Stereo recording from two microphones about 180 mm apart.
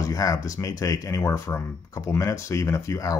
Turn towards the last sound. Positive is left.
turn(degrees=15)  # may be behind; listen again after turning